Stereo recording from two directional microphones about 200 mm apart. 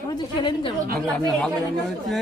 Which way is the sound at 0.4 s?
25° left (ahead or behind).